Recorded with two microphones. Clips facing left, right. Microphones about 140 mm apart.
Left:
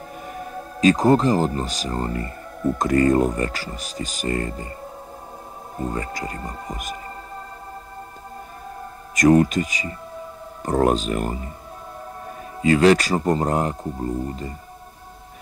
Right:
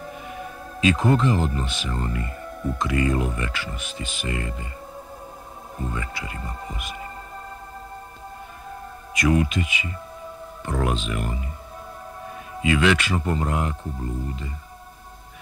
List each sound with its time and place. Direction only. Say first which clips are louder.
0.3 s speech: left 3 dB; 40° left (ahead or behind)
5.9 s speech: left 5 dB; 40° left (ahead or behind)
9.1 s speech: left 6 dB; 45° left (ahead or behind)
12.6 s speech: left 5 dB; 40° left (ahead or behind)